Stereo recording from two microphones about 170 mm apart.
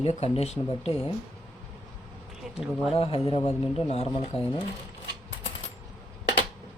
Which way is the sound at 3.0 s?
35° left (ahead or behind).